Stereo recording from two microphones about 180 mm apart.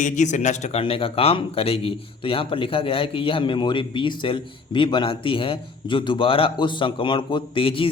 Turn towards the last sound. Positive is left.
turn(degrees=30)  # may be behind; listen again after turning